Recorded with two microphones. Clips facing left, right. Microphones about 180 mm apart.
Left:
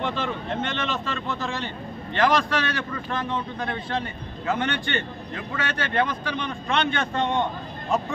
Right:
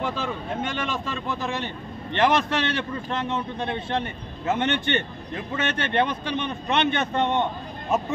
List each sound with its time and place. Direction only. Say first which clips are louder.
0.0 s a man's voice: left 1 dB; 5° right (ahead or behind)